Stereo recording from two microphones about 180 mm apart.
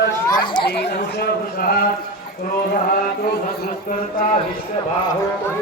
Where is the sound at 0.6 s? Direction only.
65° left (ahead or behind).